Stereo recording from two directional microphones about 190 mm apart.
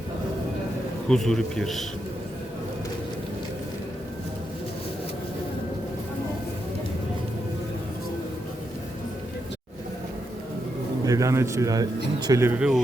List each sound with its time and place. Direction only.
1.0 s a man's voice: 5° left (ahead or behind)
11.0 s speech: 15° right (ahead or behind)